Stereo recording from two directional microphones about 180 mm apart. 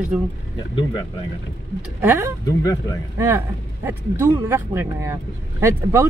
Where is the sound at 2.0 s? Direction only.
10° right (ahead or behind).